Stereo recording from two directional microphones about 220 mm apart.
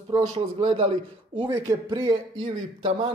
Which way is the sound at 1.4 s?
15° right (ahead or behind).